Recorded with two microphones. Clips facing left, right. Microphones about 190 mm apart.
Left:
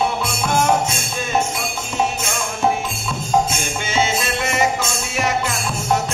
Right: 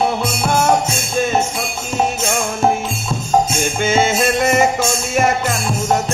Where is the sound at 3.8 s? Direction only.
50° right (ahead or behind).